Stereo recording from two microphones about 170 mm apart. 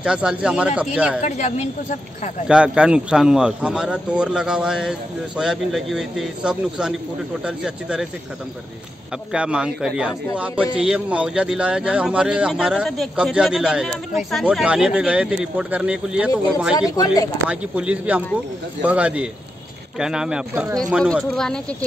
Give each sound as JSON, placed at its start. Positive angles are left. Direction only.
{"t": 0.0, "sound": "a man's voice", "side_deg": -5}
{"t": 1.2, "sound": "a woman's voice", "side_deg": 40}
{"t": 2.4, "sound": "a man's voice", "side_deg": -5}
{"t": 9.3, "sound": "a man's voice", "side_deg": -5}
{"t": 16.9, "sound": "speech", "side_deg": 20}
{"t": 17.5, "sound": "a man's voice", "side_deg": -5}